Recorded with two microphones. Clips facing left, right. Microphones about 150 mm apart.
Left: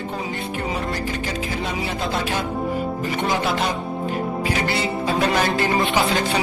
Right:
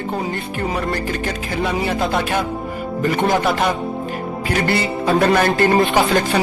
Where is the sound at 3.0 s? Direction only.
50° right (ahead or behind).